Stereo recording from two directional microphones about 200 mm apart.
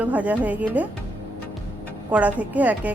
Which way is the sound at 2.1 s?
5° right (ahead or behind).